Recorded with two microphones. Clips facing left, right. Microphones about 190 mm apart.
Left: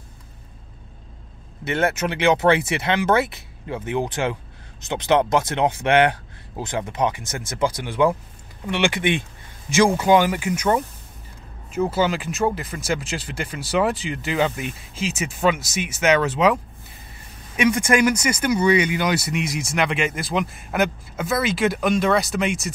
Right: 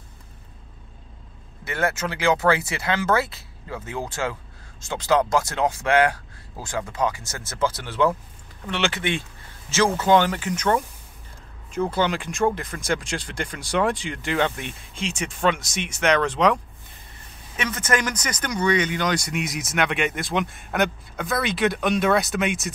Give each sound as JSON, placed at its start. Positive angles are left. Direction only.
{"t": 1.6, "sound": "speech", "side_deg": 20}
{"t": 17.6, "sound": "speech", "side_deg": 10}